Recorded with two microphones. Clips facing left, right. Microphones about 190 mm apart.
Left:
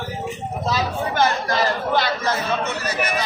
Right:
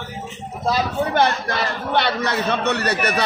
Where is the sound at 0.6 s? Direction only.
50° right (ahead or behind).